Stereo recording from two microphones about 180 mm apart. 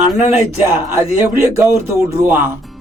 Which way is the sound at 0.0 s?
10° right (ahead or behind).